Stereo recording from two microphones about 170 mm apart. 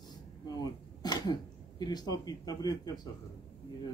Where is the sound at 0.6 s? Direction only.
25° left (ahead or behind).